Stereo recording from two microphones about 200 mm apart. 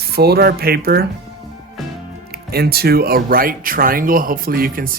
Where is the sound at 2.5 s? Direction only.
50° right (ahead or behind).